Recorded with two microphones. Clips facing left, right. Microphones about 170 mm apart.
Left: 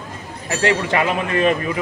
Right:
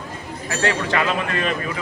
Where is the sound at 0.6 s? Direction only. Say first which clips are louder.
Left 3 dB; 20° left (ahead or behind).